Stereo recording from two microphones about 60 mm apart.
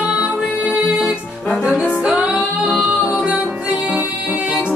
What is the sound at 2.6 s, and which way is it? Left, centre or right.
Music, centre.